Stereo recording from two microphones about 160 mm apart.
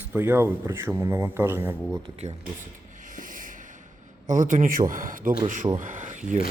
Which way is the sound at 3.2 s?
55° right (ahead or behind).